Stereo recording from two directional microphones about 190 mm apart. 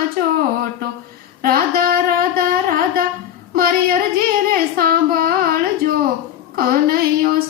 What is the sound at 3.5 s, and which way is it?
Child singing, 50° right (ahead or behind).